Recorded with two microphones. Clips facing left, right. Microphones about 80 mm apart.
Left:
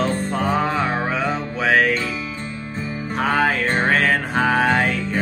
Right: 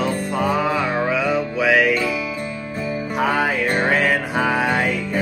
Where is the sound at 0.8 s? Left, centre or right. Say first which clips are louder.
Right 1 dB; left.